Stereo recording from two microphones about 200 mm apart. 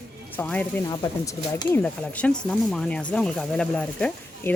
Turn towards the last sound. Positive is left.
turn(degrees=5)  # may be behind; listen again after turning